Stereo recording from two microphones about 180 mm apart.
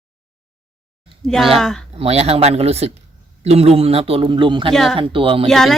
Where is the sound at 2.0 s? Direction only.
35° right (ahead or behind).